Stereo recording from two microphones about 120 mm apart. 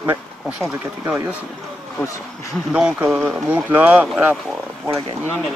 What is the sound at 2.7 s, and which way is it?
Speech, 5° right (ahead or behind).